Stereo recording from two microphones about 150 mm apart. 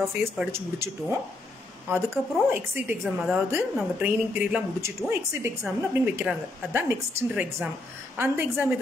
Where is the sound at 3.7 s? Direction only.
10° right (ahead or behind).